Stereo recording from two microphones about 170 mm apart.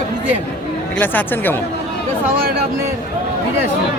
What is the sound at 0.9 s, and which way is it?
Speech, 10° left (ahead or behind).